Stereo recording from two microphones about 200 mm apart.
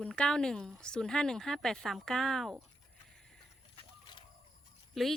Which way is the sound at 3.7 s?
25° left (ahead or behind).